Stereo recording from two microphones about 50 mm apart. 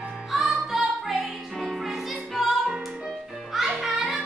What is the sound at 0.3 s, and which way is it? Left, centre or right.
Music, centre.